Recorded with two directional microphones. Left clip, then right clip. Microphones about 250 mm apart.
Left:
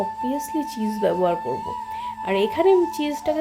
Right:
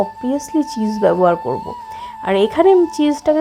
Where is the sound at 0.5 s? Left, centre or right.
Centre.